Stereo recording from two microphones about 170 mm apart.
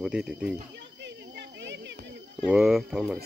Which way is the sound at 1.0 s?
90° right.